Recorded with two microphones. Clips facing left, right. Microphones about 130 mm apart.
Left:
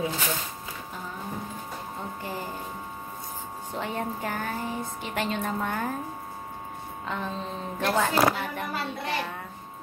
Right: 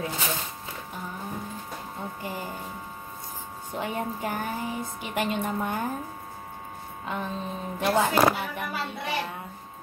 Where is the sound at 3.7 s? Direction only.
15° right (ahead or behind).